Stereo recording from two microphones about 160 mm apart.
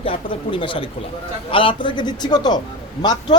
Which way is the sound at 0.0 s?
35° left (ahead or behind).